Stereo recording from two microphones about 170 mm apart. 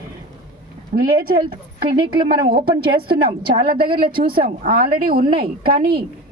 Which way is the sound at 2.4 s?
30° right (ahead or behind).